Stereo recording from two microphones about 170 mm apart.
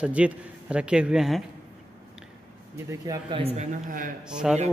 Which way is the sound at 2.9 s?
25° right (ahead or behind).